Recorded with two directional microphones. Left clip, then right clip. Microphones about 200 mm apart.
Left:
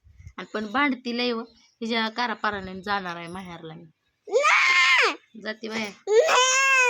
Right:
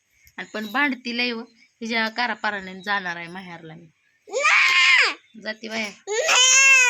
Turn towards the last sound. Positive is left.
turn(degrees=50)  # may be behind; listen again after turning